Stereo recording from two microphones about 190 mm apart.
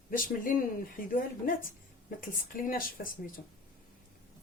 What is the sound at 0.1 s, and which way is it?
Speech, 45° left (ahead or behind).